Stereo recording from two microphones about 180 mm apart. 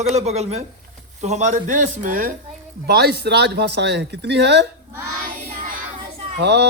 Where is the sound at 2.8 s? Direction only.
60° right (ahead or behind).